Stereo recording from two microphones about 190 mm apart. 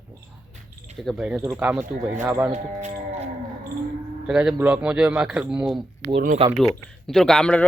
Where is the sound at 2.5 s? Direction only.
40° right (ahead or behind).